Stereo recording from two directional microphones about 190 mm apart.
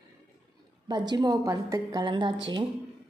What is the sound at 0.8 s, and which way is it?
A woman's voice, 20° right (ahead or behind).